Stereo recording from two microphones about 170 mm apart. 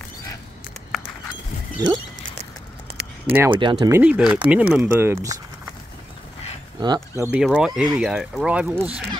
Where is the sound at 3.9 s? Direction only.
10° right (ahead or behind).